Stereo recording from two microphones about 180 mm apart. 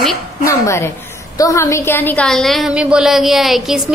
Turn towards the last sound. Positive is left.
turn(degrees=0)  # may be behind; listen again after turning